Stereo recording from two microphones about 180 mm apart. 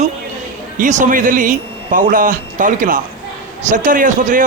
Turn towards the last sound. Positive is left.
turn(degrees=-45)  # may be behind; listen again after turning